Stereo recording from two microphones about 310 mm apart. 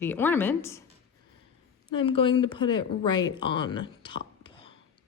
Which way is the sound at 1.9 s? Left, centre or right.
Centre.